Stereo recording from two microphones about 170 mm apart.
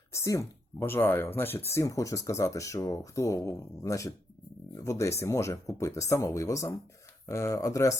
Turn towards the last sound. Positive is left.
turn(degrees=20)  # may be behind; listen again after turning